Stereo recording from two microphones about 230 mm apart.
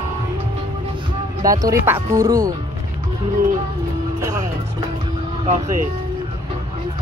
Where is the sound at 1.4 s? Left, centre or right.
Centre.